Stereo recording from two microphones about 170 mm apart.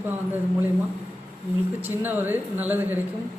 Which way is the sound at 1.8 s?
10° right (ahead or behind).